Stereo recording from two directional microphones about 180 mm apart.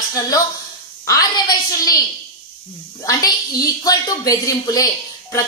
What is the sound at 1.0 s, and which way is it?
Speech, 20° left (ahead or behind).